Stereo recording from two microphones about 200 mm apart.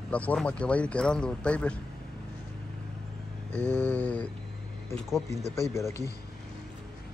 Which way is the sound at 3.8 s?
10° left (ahead or behind).